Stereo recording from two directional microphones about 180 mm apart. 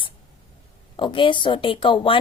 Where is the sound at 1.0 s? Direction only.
25° left (ahead or behind).